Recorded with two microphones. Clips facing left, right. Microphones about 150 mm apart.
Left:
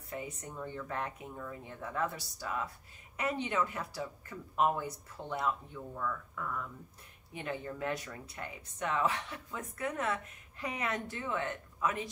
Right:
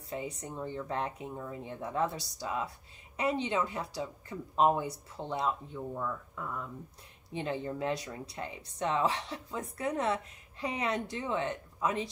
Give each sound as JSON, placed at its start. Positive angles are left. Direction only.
{"t": 0.1, "sound": "speech", "side_deg": -25}
{"t": 3.6, "sound": "speech", "side_deg": -30}
{"t": 3.9, "sound": "speech", "side_deg": -15}